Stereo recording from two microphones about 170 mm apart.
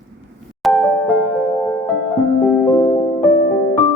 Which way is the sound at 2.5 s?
10° left (ahead or behind).